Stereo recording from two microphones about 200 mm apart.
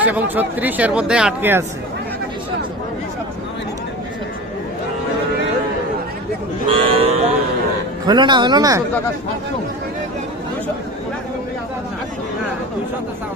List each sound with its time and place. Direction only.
0.0 s speech: 10° right (ahead or behind)
6.7 s speech: 30° right (ahead or behind)